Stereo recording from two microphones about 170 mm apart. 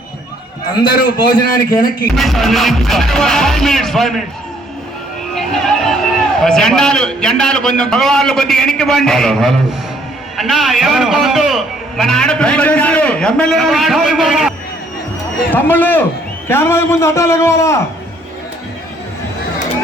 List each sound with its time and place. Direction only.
1.5 s a man's voice: 20° left (ahead or behind)
2.1 s a man's voice: centre (ahead or behind)
5.3 s a man's voice: centre (ahead or behind)
15.5 s a man's voice: 10° left (ahead or behind)